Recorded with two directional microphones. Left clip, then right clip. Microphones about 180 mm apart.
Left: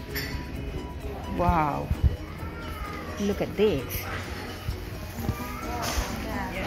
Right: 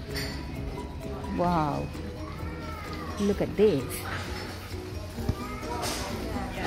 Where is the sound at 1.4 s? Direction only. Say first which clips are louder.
Left 2 dB; 20° right (ahead or behind).